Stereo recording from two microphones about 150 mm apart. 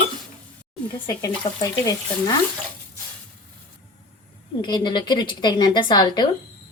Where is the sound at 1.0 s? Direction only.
25° left (ahead or behind).